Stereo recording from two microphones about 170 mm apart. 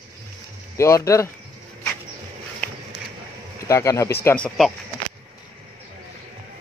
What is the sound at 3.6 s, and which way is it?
Speech, 20° left (ahead or behind).